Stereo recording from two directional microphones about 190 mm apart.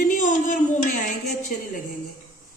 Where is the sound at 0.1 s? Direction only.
40° left (ahead or behind).